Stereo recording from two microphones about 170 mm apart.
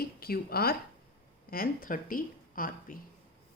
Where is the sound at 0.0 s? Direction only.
60° left (ahead or behind).